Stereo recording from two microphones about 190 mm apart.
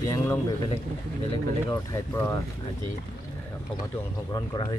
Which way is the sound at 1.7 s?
15° left (ahead or behind).